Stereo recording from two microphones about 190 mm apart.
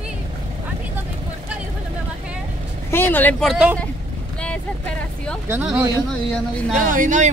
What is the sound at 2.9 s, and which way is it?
Speech, 10° left (ahead or behind).